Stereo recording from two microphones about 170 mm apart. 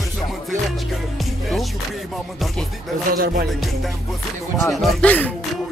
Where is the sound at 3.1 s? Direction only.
60° right (ahead or behind).